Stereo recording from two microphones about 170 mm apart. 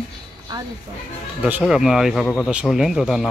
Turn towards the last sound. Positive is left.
turn(degrees=-5)  # may be behind; listen again after turning